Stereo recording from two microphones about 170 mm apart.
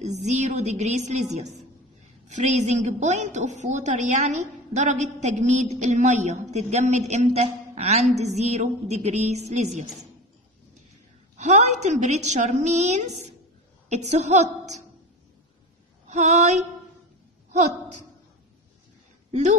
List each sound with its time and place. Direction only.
0.0 s a man's voice: 40° right (ahead or behind)
11.3 s a woman's voice: 45° right (ahead or behind)
16.1 s a woman's voice: 45° right (ahead or behind)
17.5 s a sound: 45° right (ahead or behind)